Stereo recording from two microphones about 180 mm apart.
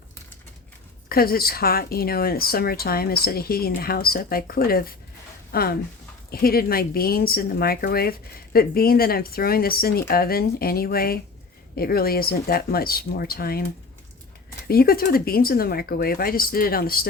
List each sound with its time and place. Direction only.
1.0 s speech: 55° left (ahead or behind)
14.7 s speech: 55° left (ahead or behind)